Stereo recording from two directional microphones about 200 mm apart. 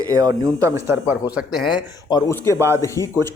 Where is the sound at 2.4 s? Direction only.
15° right (ahead or behind).